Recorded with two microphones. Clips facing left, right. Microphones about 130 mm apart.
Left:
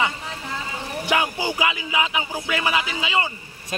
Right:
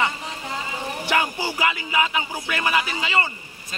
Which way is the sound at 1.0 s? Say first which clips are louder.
Left 1 dB; 15° left (ahead or behind).